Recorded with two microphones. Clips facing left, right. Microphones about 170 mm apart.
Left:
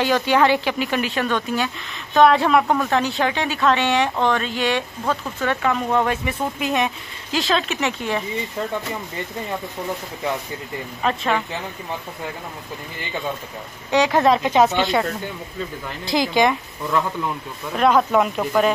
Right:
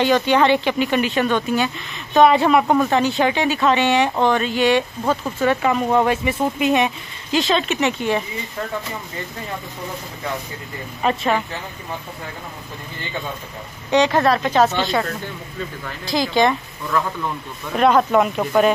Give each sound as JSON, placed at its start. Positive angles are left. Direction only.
{"t": 0.0, "sound": "speech", "side_deg": 5}
{"t": 11.0, "sound": "speech", "side_deg": -5}
{"t": 13.8, "sound": "speech", "side_deg": 5}
{"t": 14.2, "sound": "speech", "side_deg": 15}
{"t": 16.1, "sound": "speech", "side_deg": 15}
{"t": 17.7, "sound": "speech", "side_deg": 0}